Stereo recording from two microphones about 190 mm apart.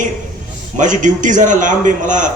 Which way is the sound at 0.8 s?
40° right (ahead or behind).